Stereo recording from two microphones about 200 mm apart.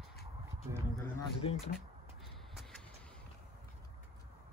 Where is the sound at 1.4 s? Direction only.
25° left (ahead or behind).